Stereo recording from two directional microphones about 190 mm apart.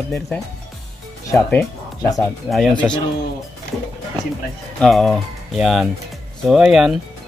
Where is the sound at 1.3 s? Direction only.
15° left (ahead or behind).